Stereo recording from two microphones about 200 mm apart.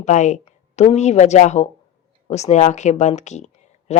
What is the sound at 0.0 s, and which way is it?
Speech, 35° left (ahead or behind).